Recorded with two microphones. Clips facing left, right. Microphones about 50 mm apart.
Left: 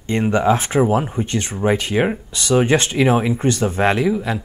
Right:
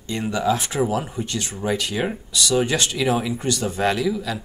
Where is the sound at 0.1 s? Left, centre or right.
Left.